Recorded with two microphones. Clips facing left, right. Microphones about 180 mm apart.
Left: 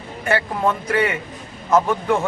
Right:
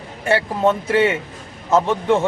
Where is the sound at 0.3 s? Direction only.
25° right (ahead or behind).